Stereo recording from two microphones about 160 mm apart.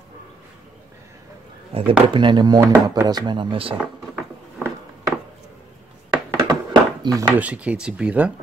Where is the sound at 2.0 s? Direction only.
30° right (ahead or behind).